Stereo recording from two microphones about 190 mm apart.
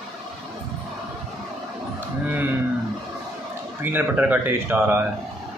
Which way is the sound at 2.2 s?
10° right (ahead or behind).